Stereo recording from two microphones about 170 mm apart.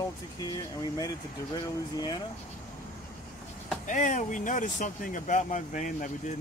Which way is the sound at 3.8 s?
45° left (ahead or behind).